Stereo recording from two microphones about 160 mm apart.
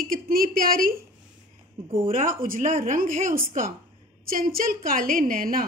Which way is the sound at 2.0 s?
60° right (ahead or behind).